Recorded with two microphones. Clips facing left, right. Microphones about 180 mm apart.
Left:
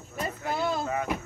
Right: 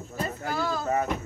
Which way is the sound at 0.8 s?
40° right (ahead or behind).